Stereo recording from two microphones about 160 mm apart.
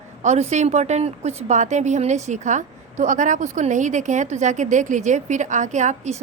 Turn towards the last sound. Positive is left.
turn(degrees=-50)  # may be behind; listen again after turning